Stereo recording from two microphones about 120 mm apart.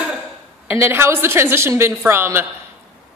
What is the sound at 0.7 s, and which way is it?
A woman's voice, 20° right (ahead or behind).